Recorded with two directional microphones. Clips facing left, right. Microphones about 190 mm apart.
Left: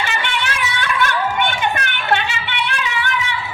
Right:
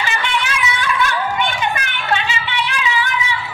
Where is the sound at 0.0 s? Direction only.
60° left (ahead or behind).